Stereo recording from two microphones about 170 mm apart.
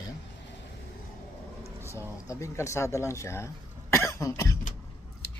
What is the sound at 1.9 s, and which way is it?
Speech, 20° left (ahead or behind).